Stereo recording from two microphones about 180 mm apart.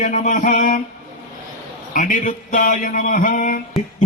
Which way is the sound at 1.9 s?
50° left (ahead or behind).